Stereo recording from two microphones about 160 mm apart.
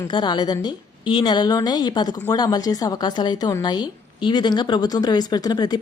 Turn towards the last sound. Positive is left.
turn(degrees=25)  # may be behind; listen again after turning